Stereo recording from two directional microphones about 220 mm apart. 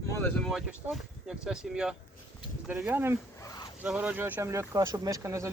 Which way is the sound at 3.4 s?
15° left (ahead or behind).